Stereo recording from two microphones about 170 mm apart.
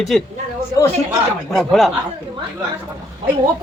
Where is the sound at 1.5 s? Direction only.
Centre (ahead or behind).